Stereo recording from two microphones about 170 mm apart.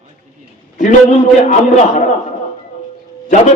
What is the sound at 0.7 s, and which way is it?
Speech, 45° left (ahead or behind).